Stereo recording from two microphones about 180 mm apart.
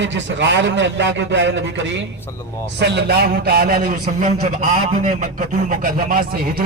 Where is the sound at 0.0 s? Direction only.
90° right.